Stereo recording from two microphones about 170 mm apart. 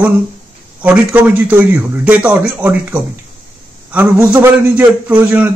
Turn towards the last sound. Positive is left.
turn(degrees=-10)  # may be behind; listen again after turning